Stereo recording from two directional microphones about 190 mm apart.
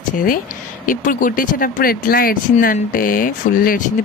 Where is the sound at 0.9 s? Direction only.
45° left (ahead or behind).